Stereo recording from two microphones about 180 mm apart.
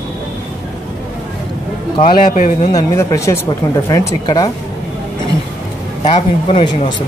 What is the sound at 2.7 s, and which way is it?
A man's voice, 20° left (ahead or behind).